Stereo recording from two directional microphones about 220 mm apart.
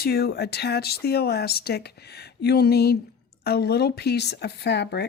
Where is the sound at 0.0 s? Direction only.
45° left (ahead or behind).